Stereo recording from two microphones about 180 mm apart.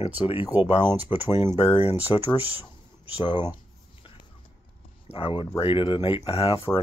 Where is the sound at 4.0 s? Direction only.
30° left (ahead or behind).